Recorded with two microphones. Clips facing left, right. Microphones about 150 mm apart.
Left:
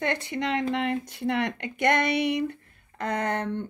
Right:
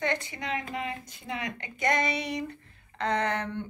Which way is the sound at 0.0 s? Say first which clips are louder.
Left 4 dB; 60° left (ahead or behind).